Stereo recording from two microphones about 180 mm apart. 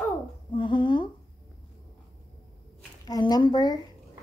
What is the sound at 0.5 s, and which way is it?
Speech, 25° left (ahead or behind).